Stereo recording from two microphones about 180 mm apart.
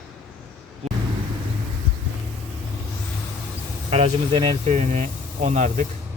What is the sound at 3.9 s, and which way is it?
Speech, 30° right (ahead or behind).